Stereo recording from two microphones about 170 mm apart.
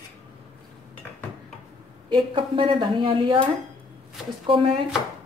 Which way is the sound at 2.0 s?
30° right (ahead or behind).